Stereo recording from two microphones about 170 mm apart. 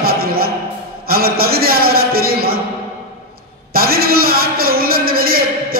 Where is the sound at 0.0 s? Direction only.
65° right (ahead or behind).